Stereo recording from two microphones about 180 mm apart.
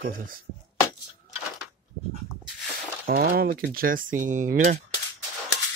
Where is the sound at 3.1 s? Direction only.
55° right (ahead or behind).